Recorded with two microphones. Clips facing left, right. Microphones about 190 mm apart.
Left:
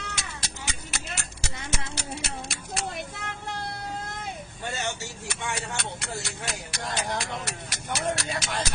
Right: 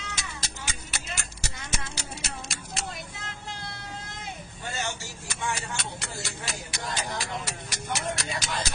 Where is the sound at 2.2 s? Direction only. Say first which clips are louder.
Left 3 dB; 60° left (ahead or behind).